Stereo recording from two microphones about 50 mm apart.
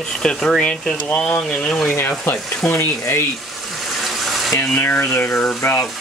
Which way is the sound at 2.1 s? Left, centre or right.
Left.